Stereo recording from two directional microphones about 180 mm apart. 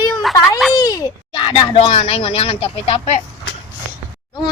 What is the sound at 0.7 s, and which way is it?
Speech, 20° left (ahead or behind).